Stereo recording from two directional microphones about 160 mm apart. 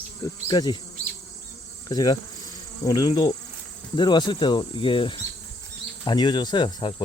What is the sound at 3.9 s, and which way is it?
Speech, 30° left (ahead or behind).